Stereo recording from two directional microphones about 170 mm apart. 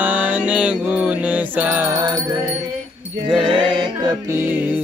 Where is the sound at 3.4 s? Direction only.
30° right (ahead or behind).